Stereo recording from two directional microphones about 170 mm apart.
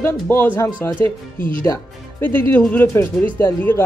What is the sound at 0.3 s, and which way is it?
Speech, 10° left (ahead or behind).